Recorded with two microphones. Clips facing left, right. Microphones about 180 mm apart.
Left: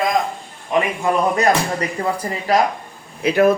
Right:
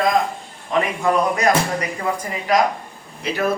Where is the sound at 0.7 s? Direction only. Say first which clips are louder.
Left 1 dB; 20° left (ahead or behind).